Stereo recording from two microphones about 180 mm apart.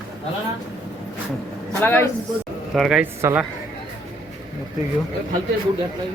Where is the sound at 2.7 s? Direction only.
5° right (ahead or behind).